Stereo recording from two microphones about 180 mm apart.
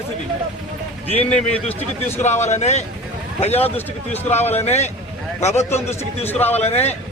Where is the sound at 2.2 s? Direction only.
40° left (ahead or behind).